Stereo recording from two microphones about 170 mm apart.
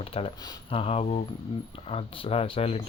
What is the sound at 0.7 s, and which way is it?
Speech, 35° left (ahead or behind).